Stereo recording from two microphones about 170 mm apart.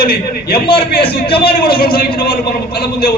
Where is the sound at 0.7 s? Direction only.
65° left (ahead or behind).